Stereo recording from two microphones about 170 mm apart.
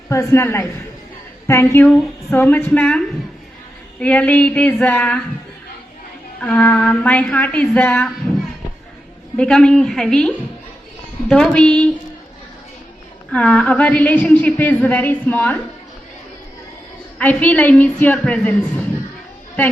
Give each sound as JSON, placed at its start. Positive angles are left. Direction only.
{"t": 0.1, "sound": "a woman's voice", "side_deg": 15}
{"t": 4.0, "sound": "a woman's voice", "side_deg": 10}
{"t": 6.4, "sound": "a woman's voice", "side_deg": 10}
{"t": 9.4, "sound": "a woman's voice", "side_deg": 5}
{"t": 13.3, "sound": "a woman's voice", "side_deg": 5}
{"t": 17.2, "sound": "a woman's voice", "side_deg": 10}